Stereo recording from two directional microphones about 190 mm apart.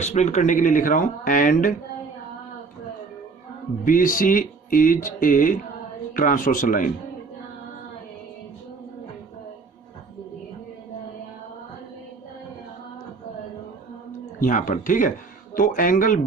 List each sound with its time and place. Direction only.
0.0 s speech: 35° left (ahead or behind)
3.8 s speech: 45° left (ahead or behind)
14.3 s speech: 45° left (ahead or behind)